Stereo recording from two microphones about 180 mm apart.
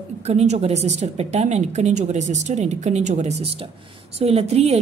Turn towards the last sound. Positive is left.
turn(degrees=-35)  # may be behind; listen again after turning